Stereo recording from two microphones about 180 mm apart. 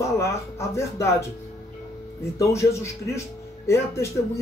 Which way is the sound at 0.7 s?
15° left (ahead or behind).